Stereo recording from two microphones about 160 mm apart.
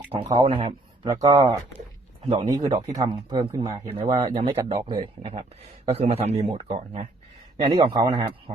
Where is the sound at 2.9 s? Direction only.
25° right (ahead or behind).